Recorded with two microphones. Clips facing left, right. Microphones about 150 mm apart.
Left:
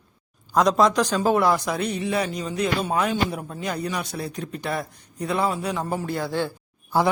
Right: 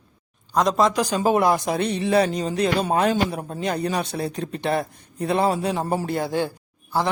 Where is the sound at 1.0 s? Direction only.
15° right (ahead or behind).